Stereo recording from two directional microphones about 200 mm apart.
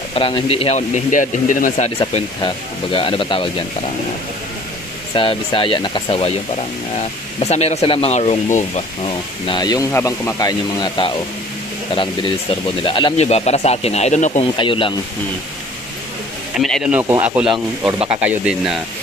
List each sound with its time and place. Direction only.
0.1 s speech: 25° left (ahead or behind)
2.0 s speech: 25° left (ahead or behind)
5.1 s speech: 25° left (ahead or behind)
7.3 s speech: 30° left (ahead or behind)
14.6 s speech: 25° left (ahead or behind)
16.5 s speech: centre (ahead or behind)